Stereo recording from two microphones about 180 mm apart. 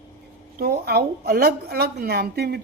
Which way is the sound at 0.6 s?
60° right (ahead or behind).